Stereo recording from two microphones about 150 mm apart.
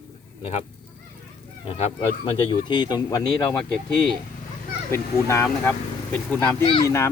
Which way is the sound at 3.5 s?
5° left (ahead or behind).